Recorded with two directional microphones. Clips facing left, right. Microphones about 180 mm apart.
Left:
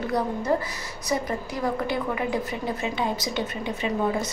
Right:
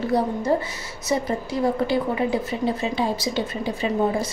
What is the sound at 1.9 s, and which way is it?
A woman's voice, 30° right (ahead or behind).